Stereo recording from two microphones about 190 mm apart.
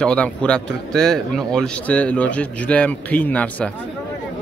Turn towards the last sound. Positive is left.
turn(degrees=5)  # may be behind; listen again after turning